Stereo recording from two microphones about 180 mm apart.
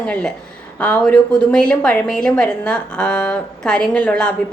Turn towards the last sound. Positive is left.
turn(degrees=5)  # may be behind; listen again after turning